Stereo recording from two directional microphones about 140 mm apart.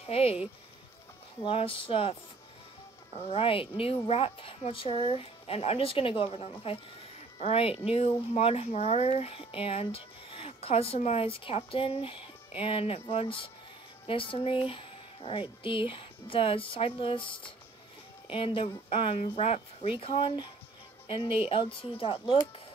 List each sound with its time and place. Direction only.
0.1 s speech: 45° left (ahead or behind)
1.4 s speech: 40° left (ahead or behind)